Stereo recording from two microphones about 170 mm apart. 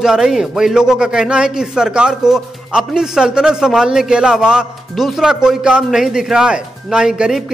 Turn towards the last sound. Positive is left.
turn(degrees=-5)  # may be behind; listen again after turning